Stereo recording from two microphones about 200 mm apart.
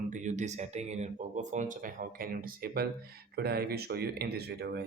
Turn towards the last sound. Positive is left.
turn(degrees=-55)  # may be behind; listen again after turning